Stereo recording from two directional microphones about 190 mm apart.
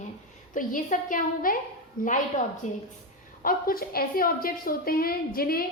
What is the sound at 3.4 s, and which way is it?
A woman's voice, 50° left (ahead or behind).